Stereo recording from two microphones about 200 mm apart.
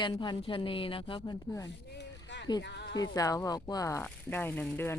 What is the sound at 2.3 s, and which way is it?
Music, 65° left (ahead or behind).